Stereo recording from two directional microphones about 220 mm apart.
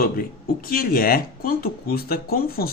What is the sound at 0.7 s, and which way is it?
Speech, 40° left (ahead or behind).